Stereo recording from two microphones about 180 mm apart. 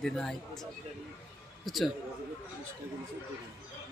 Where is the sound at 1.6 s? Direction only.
Centre (ahead or behind).